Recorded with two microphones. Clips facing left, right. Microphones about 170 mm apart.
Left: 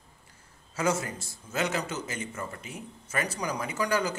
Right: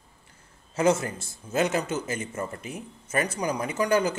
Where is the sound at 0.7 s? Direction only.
30° right (ahead or behind).